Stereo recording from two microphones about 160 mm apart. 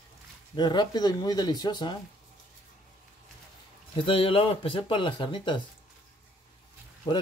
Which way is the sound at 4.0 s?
35° left (ahead or behind).